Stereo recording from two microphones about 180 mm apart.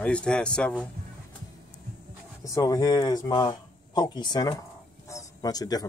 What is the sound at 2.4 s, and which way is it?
Speech, 20° left (ahead or behind).